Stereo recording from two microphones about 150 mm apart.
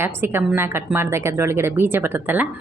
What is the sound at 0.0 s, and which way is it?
A woman's voice, 15° right (ahead or behind).